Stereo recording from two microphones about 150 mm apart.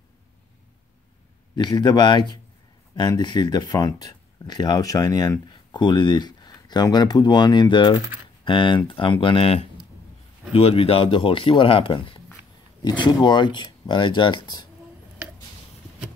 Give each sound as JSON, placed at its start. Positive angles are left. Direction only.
{"t": 1.5, "sound": "speech", "side_deg": 30}